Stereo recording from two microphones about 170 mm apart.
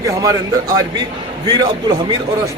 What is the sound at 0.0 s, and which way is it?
A man's voice, 20° right (ahead or behind).